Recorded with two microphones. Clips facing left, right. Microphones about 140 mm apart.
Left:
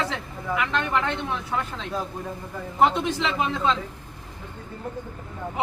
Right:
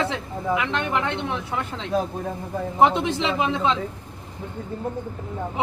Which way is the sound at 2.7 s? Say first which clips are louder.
Right 2 dB; 20° right (ahead or behind).